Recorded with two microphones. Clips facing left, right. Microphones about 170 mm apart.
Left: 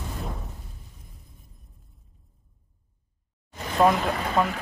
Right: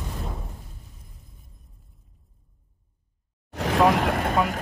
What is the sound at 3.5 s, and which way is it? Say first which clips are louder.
Vehicle: right 1 dB; 80° right.